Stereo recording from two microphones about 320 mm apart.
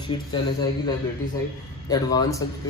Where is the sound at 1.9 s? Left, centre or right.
Centre.